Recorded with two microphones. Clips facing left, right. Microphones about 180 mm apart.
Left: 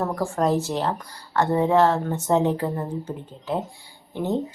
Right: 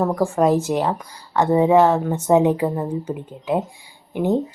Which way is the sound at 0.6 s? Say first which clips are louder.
Right 4 dB; 15° right (ahead or behind).